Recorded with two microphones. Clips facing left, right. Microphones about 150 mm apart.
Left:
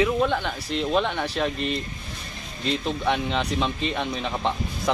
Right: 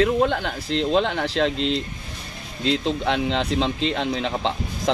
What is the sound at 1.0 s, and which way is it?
Speech, 90° right.